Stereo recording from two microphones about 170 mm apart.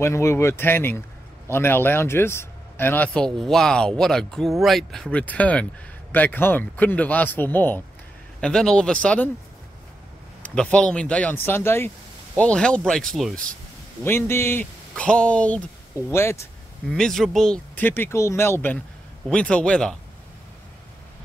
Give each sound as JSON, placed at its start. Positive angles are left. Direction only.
{"t": 0.0, "sound": "speech", "side_deg": 15}
{"t": 10.4, "sound": "speech", "side_deg": 5}
{"t": 14.0, "sound": "speech", "side_deg": 15}
{"t": 16.9, "sound": "speech", "side_deg": 0}